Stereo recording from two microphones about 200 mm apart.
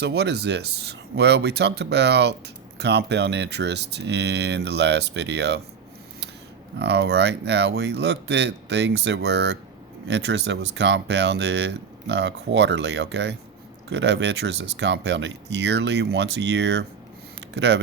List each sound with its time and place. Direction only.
0.0 s speech: 55° right (ahead or behind)
6.7 s speech: 60° right (ahead or behind)